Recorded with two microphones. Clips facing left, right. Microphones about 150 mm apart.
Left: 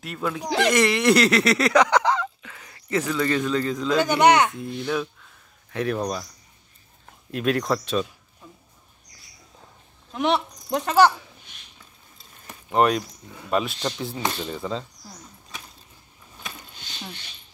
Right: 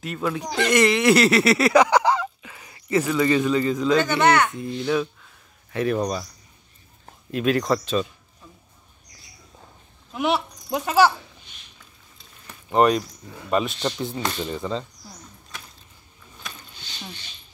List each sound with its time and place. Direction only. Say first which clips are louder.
0.0 s speech: right 2 dB; centre (ahead or behind)
4.0 s speech: left 6 dB; 15° left (ahead or behind)
4.6 s speech: right 3 dB; centre (ahead or behind)
7.2 s speech: right 2 dB; centre (ahead or behind)
10.1 s speech: even; 5° right (ahead or behind)
12.6 s speech: right 2 dB; centre (ahead or behind)